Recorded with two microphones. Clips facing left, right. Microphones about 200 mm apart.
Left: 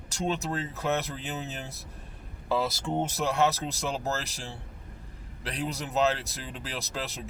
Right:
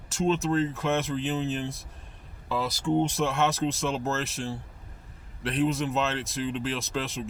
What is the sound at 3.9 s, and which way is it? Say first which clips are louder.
Speech: right 2 dB; 35° left (ahead or behind).